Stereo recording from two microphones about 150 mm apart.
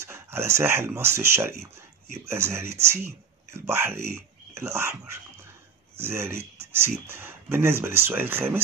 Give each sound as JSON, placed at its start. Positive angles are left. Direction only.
{"t": 0.0, "sound": "speech", "side_deg": -15}